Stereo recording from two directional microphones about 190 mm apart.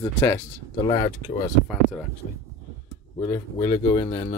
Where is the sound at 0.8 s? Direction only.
25° left (ahead or behind).